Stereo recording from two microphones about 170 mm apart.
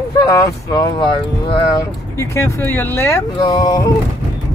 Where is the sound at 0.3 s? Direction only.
20° left (ahead or behind).